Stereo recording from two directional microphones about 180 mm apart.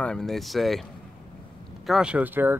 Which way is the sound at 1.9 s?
5° right (ahead or behind).